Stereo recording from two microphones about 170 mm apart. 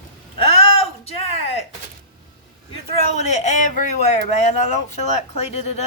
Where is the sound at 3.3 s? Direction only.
45° left (ahead or behind).